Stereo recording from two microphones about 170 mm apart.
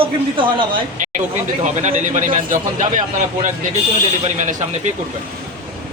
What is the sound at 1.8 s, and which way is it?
Speech, 45° right (ahead or behind).